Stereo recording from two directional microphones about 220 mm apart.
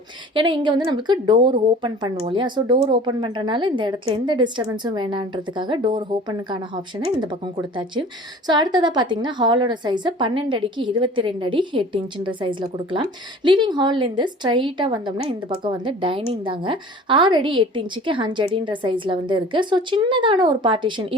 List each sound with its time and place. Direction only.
0.3 s a woman's voice: 20° right (ahead or behind)